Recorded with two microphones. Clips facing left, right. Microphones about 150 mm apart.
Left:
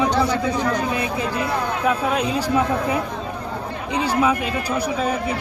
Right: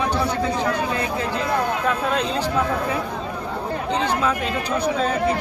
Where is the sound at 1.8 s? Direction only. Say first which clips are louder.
Left 2 dB; 10° left (ahead or behind).